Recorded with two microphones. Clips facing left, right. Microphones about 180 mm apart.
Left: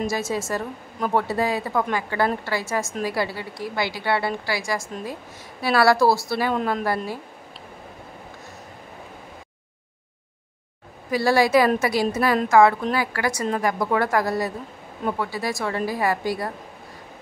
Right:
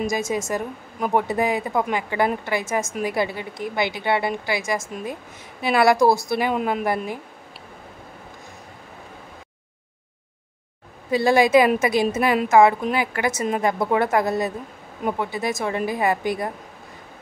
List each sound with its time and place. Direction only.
0.1 s a woman's voice: 15° right (ahead or behind)
11.1 s a woman's voice: 20° right (ahead or behind)